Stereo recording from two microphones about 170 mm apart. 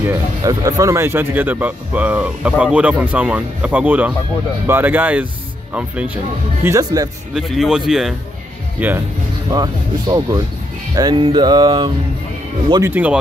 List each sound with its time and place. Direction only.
0.0 s speech: 20° right (ahead or behind)
6.6 s speech: 20° right (ahead or behind)
7.3 s speech: centre (ahead or behind)
9.5 s speech: 25° right (ahead or behind)
12.9 s speech: 5° right (ahead or behind)